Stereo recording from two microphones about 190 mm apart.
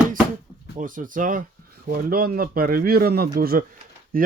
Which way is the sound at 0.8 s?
45° right (ahead or behind).